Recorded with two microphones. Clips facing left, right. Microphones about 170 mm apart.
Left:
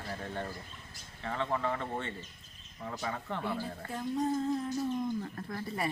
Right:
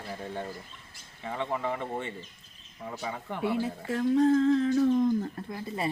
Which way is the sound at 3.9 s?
80° right.